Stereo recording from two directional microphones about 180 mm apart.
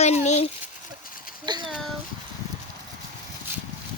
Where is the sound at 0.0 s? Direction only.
40° left (ahead or behind).